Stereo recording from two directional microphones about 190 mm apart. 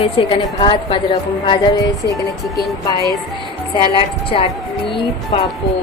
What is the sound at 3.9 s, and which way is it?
A woman's voice, 30° left (ahead or behind).